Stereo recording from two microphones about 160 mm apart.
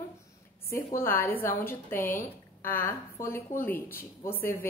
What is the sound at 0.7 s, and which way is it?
A woman's voice, 15° left (ahead or behind).